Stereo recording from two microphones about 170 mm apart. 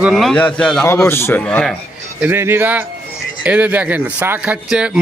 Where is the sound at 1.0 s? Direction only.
15° left (ahead or behind).